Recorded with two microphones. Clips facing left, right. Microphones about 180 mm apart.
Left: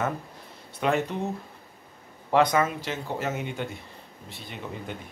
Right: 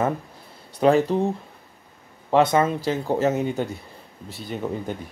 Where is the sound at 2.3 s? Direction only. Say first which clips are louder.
Right 4 dB; 25° right (ahead or behind).